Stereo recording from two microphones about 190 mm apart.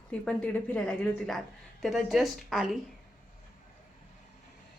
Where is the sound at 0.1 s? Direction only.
5° left (ahead or behind).